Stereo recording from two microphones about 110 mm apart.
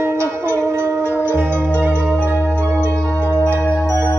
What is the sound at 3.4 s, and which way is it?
Glockenspiel, 20° right (ahead or behind).